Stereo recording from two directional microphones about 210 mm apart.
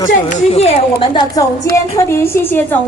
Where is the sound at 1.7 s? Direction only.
10° left (ahead or behind).